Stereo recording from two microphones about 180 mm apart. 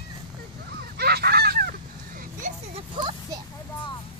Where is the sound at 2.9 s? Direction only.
25° right (ahead or behind).